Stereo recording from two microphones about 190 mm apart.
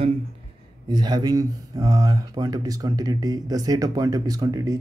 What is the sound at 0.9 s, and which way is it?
Speech, 20° right (ahead or behind).